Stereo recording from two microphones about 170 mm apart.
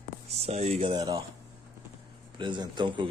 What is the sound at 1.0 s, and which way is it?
Speech, 20° right (ahead or behind).